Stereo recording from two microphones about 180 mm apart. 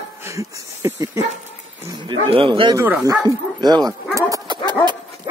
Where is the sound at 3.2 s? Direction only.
25° right (ahead or behind).